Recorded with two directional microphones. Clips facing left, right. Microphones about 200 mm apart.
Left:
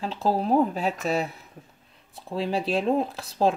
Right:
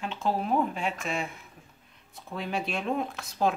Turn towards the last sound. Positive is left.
turn(degrees=30)  # may be behind; listen again after turning